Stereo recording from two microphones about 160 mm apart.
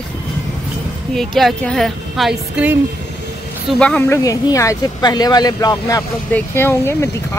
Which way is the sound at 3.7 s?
5° left (ahead or behind).